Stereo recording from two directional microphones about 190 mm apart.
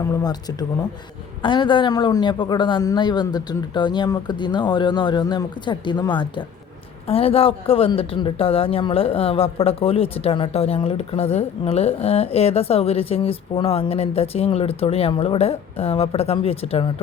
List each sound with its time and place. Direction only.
0.0 s a man's voice: 20° left (ahead or behind)